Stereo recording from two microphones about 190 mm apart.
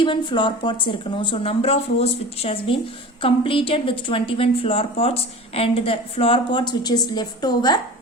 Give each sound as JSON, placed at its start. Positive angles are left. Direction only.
{"t": 0.0, "sound": "speech", "side_deg": 25}